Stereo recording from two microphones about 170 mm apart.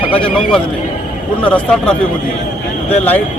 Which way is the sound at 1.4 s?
5° left (ahead or behind).